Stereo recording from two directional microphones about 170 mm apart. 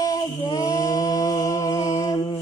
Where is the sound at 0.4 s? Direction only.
20° left (ahead or behind).